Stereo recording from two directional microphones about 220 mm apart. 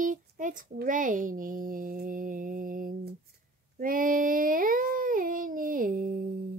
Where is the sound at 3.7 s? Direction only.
40° right (ahead or behind).